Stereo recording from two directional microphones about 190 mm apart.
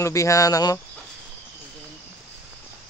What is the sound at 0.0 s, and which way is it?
Speech, 15° left (ahead or behind).